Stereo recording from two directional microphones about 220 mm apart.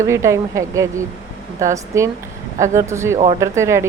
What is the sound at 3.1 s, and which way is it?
Speech, 30° right (ahead or behind).